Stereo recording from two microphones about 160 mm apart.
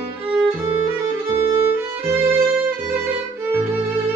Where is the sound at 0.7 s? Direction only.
15° right (ahead or behind).